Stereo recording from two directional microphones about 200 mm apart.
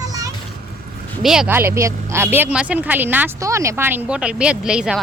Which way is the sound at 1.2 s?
5° right (ahead or behind).